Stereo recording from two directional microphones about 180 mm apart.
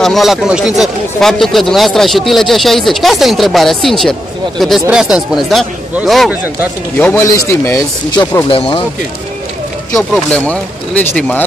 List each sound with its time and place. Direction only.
0.0 s speech: centre (ahead or behind)
7.0 s speech: 15° left (ahead or behind)
8.5 s speech: 30° left (ahead or behind)
9.9 s speech: 5° left (ahead or behind)